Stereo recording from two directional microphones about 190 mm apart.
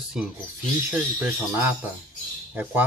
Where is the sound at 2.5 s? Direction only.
10° right (ahead or behind).